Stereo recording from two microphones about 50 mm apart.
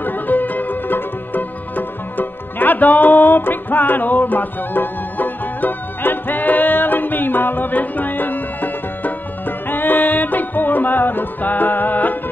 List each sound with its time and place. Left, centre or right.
0.0 s music: left